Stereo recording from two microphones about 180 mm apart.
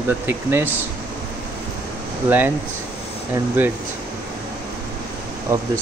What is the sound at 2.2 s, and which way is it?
Speech, 10° right (ahead or behind).